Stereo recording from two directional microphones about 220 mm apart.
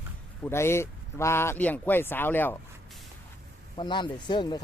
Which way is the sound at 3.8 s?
20° left (ahead or behind).